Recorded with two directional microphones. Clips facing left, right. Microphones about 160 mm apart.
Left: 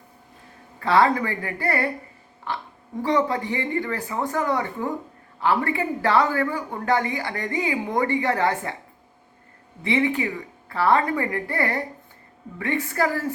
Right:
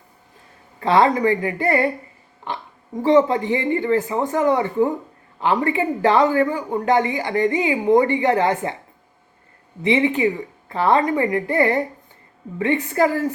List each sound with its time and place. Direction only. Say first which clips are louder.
0.8 s speech: right 3 dB; 20° right (ahead or behind)
9.8 s speech: right 5 dB; 20° right (ahead or behind)